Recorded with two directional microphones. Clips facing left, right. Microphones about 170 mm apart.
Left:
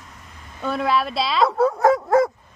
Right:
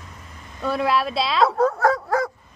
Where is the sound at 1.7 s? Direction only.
20° left (ahead or behind).